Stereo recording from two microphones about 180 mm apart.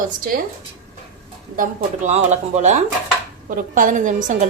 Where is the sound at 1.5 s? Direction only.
40° right (ahead or behind).